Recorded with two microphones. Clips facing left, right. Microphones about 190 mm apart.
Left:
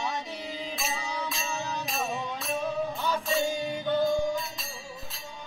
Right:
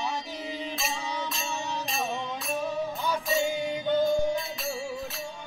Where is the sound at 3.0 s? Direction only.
15° right (ahead or behind).